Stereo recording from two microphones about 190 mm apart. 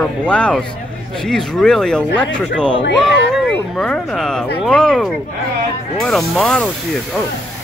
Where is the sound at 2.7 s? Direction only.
70° left (ahead or behind).